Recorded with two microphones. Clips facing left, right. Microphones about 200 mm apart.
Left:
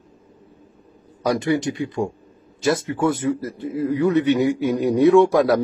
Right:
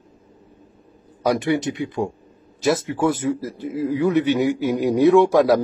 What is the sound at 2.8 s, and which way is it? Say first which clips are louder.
Speech: even; 25° right (ahead or behind).